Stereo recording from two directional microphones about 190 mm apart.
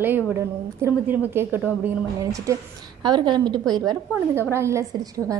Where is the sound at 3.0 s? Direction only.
25° right (ahead or behind).